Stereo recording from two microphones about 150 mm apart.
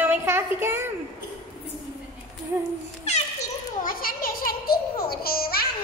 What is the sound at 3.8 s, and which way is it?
Babbling, 75° left (ahead or behind).